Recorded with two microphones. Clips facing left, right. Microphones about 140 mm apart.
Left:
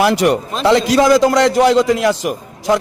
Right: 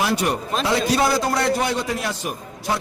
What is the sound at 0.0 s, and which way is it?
A man's voice, 90° left.